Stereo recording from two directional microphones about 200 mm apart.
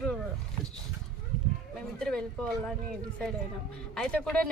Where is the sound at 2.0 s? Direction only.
5° left (ahead or behind).